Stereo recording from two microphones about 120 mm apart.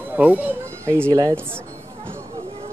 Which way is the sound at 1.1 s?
30° right (ahead or behind).